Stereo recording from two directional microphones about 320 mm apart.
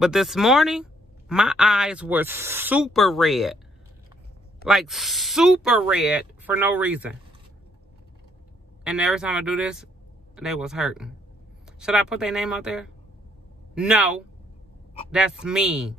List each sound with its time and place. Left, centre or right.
0.0 s speech: centre
4.6 s speech: centre
8.8 s speech: centre